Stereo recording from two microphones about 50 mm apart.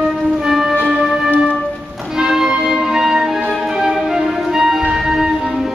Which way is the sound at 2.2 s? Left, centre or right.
Centre.